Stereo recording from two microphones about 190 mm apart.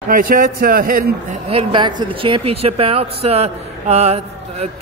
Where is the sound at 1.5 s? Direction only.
30° right (ahead or behind).